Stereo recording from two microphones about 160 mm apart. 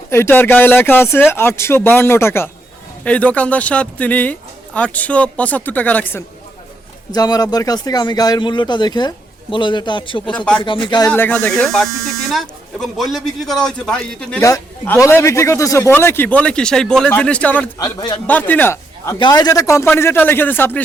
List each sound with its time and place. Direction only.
0.1 s speech: 15° left (ahead or behind)
7.1 s speech: 25° left (ahead or behind)
10.3 s a man's voice: 5° left (ahead or behind)
10.6 s speech: 30° left (ahead or behind)
11.1 s a man's voice: 10° left (ahead or behind)
14.4 s speech: 15° left (ahead or behind)
17.7 s speech: 25° left (ahead or behind)
18.3 s speech: 10° left (ahead or behind)
19.2 s speech: 25° left (ahead or behind)